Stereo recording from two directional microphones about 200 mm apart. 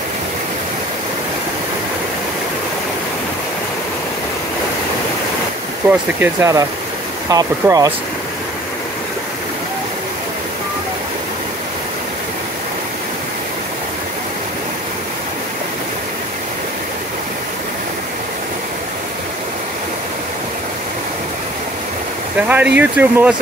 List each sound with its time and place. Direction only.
5.9 s speech: 10° right (ahead or behind)
22.5 s speech: 10° right (ahead or behind)